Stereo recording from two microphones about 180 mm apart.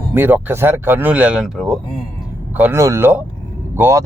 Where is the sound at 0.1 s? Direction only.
10° right (ahead or behind).